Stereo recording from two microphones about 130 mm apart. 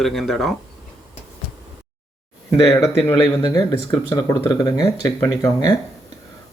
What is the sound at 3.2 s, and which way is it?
Speech, 30° left (ahead or behind).